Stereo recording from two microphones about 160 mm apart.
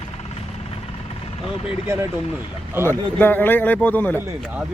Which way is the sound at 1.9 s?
15° right (ahead or behind).